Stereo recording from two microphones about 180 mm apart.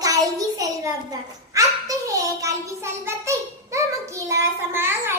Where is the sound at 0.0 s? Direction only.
20° right (ahead or behind).